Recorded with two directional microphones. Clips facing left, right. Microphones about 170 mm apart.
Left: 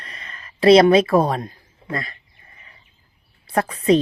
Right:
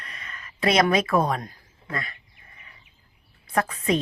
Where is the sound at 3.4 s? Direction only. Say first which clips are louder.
Left 6 dB; 35° left (ahead or behind).